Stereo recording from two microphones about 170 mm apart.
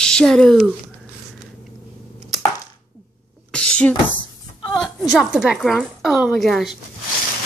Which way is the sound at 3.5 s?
5° left (ahead or behind).